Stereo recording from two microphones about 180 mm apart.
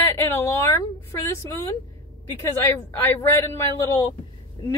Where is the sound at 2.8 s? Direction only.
10° left (ahead or behind).